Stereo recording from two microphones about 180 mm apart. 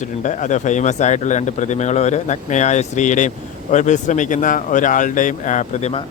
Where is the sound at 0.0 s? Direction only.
45° left (ahead or behind).